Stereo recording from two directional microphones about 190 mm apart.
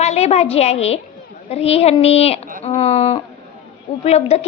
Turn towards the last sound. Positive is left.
turn(degrees=35)  # may be behind; listen again after turning